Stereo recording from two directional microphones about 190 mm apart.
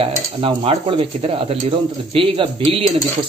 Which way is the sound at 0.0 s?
30° right (ahead or behind).